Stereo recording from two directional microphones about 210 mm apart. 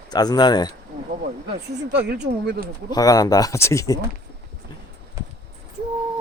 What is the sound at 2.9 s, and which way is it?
Speech, 15° left (ahead or behind).